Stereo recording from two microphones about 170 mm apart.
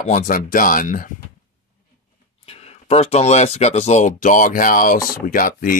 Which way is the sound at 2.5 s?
40° left (ahead or behind).